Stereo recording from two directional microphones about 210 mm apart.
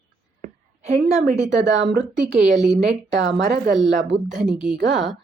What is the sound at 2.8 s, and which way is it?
Speech, 55° right (ahead or behind).